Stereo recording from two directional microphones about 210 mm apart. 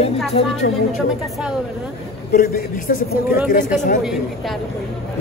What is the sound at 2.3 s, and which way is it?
Speech, 40° left (ahead or behind).